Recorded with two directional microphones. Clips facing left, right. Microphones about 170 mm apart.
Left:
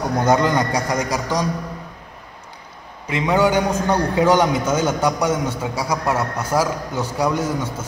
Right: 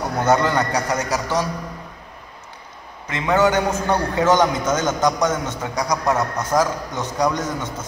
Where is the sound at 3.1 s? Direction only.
15° left (ahead or behind).